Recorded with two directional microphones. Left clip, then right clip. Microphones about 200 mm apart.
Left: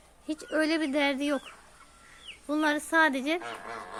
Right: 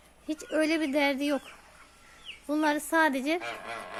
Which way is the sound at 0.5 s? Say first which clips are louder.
Even; 10° right (ahead or behind).